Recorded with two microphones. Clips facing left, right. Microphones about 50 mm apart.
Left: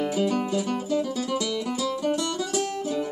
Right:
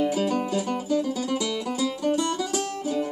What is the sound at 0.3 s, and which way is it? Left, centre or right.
Music, centre.